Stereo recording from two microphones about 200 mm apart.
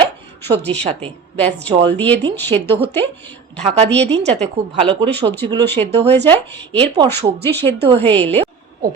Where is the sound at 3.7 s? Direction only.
30° right (ahead or behind).